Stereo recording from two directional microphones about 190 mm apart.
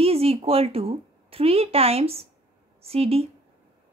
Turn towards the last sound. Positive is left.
turn(degrees=-30)  # may be behind; listen again after turning